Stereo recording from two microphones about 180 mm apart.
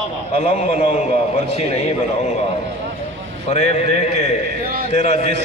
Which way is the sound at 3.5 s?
35° left (ahead or behind).